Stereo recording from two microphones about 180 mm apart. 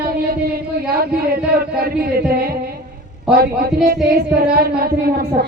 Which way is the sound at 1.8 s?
55° right (ahead or behind).